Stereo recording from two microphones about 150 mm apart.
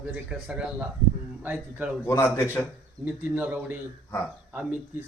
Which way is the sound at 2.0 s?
20° left (ahead or behind).